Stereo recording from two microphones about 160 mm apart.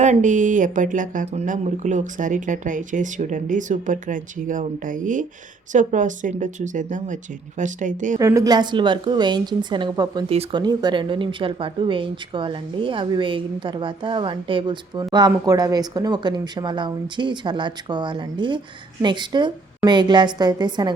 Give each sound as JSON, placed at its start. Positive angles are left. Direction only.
{"t": 0.0, "sound": "speech", "side_deg": -50}
{"t": 8.2, "sound": "a woman's voice", "side_deg": -20}